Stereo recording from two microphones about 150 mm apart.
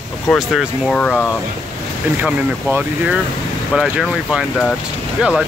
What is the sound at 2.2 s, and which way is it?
Speech, 10° right (ahead or behind).